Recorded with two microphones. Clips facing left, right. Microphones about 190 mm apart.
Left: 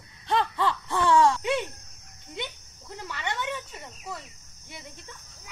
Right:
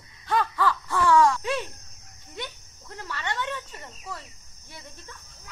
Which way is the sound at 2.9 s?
15° left (ahead or behind).